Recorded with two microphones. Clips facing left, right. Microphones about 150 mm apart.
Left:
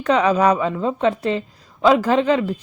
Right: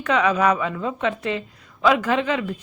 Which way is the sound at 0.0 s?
35° left (ahead or behind).